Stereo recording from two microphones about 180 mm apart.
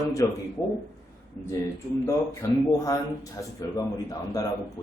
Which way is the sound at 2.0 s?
15° left (ahead or behind).